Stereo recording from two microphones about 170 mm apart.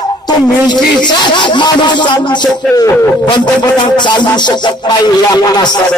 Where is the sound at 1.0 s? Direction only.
25° left (ahead or behind).